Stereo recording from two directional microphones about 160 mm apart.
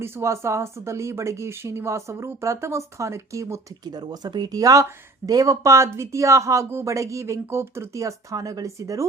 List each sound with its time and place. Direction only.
0.0 s speech: 15° right (ahead or behind)